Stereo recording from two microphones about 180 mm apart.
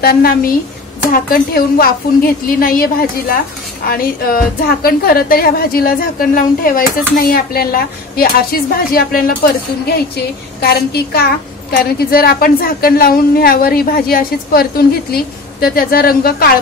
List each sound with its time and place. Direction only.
0.0 s a woman's voice: 55° left (ahead or behind)